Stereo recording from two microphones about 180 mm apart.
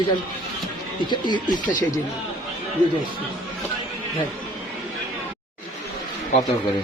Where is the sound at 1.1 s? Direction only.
25° left (ahead or behind).